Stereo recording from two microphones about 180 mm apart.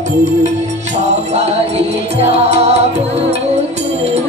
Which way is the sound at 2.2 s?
35° right (ahead or behind).